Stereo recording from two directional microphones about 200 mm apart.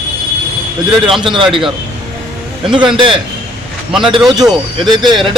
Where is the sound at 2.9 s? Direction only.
25° right (ahead or behind).